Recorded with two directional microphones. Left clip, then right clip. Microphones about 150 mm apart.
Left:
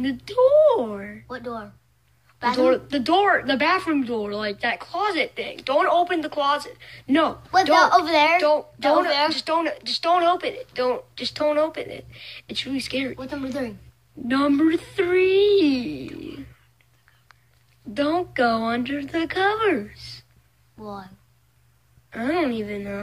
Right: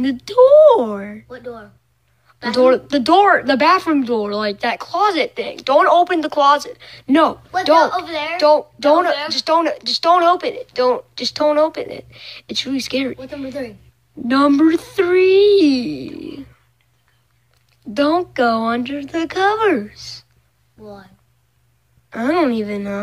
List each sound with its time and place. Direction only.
0.0 s speech: 40° right (ahead or behind)
1.3 s speech: 45° left (ahead or behind)
2.5 s speech: 40° right (ahead or behind)
7.9 s a woman's voice: 75° left (ahead or behind)
8.4 s speech: 30° right (ahead or behind)
13.5 s a woman's voice: 40° left (ahead or behind)
14.2 s speech: 35° right (ahead or behind)
17.9 s speech: 35° right (ahead or behind)
19.2 s speech: 35° right (ahead or behind)
20.8 s speech: 45° left (ahead or behind)
22.1 s speech: 40° right (ahead or behind)